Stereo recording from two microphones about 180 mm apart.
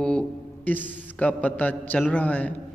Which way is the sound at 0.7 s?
10° left (ahead or behind).